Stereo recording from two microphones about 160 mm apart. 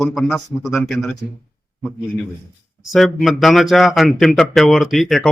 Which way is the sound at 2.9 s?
Centre (ahead or behind).